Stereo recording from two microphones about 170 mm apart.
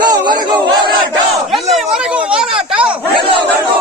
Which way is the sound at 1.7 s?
5° right (ahead or behind).